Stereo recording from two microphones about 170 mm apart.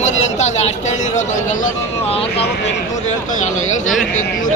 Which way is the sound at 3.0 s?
45° left (ahead or behind).